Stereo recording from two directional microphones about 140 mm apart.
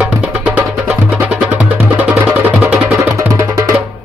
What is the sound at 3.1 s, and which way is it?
Music, 20° right (ahead or behind).